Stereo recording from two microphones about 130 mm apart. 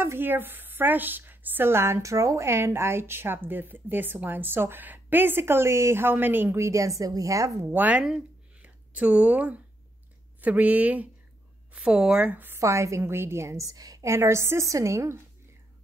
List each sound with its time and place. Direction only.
0.0 s a woman's voice: 15° right (ahead or behind)
7.7 s a woman's voice: 10° right (ahead or behind)